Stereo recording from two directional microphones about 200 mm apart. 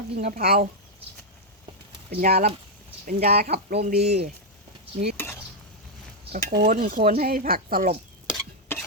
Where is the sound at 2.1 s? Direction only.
50° right (ahead or behind).